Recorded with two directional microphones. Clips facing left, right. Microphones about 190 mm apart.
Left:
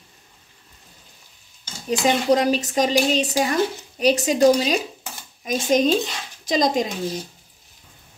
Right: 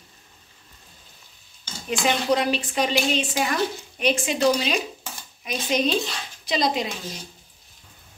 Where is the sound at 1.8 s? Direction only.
40° left (ahead or behind).